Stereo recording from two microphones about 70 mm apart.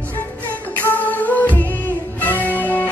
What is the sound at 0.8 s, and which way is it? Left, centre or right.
Music, left.